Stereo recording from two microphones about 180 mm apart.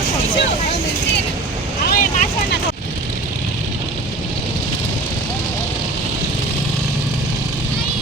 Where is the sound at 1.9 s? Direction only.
45° left (ahead or behind).